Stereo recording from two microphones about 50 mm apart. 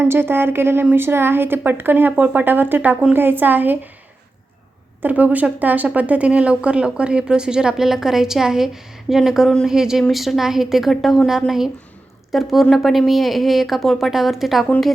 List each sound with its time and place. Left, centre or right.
0.0 s a woman's voice: right
5.0 s a woman's voice: right; by 14.7 s centre